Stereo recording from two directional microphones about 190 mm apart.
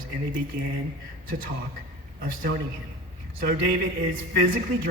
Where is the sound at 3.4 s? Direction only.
50° right (ahead or behind).